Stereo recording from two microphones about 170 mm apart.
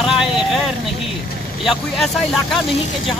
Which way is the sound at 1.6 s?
Centre (ahead or behind).